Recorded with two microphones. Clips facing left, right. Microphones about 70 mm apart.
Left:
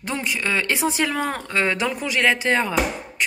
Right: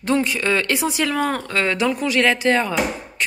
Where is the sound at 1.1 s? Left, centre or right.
Centre.